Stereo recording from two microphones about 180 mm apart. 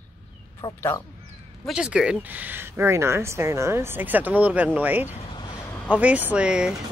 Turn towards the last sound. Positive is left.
turn(degrees=-5)  # may be behind; listen again after turning